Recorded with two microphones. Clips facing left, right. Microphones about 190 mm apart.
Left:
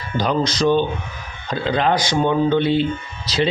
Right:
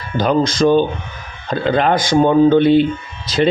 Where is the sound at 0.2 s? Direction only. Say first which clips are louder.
Right 5 dB; 50° right (ahead or behind).